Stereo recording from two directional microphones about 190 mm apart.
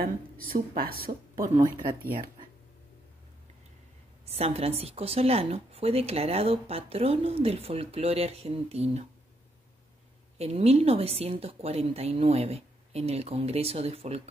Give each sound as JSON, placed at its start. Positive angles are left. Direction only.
{"t": 0.5, "sound": "speech", "side_deg": -50}
{"t": 4.3, "sound": "a woman's voice", "side_deg": -35}
{"t": 10.3, "sound": "a woman's voice", "side_deg": -35}